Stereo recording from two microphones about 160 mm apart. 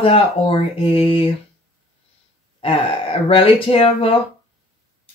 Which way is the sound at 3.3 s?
35° left (ahead or behind).